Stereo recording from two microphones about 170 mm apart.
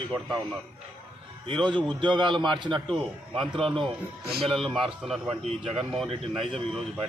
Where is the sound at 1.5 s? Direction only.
25° right (ahead or behind).